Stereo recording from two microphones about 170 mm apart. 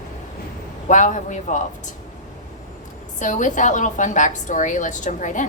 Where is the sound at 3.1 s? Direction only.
45° left (ahead or behind).